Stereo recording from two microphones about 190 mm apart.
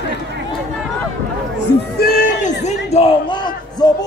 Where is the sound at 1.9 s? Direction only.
50° left (ahead or behind).